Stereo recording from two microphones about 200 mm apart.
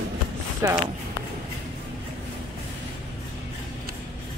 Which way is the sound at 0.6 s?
15° right (ahead or behind).